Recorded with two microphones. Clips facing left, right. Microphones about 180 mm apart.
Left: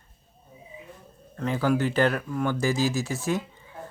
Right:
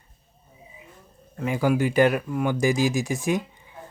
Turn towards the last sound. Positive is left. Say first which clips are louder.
# right 3 dB
turn(degrees=-15)  # may be behind; listen again after turning